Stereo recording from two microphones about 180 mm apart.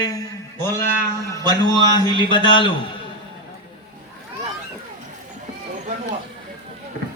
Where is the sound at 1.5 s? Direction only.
25° left (ahead or behind).